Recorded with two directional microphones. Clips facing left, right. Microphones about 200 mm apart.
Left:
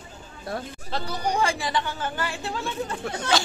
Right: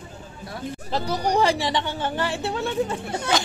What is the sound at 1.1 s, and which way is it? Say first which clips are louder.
Speech: right 4 dB; 40° right (ahead or behind).